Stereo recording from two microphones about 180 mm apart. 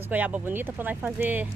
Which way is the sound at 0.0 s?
10° right (ahead or behind).